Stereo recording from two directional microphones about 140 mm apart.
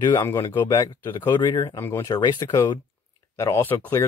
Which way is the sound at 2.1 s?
30° left (ahead or behind).